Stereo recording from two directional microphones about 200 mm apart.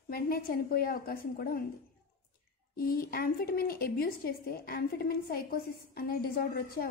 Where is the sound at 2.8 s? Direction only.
45° left (ahead or behind).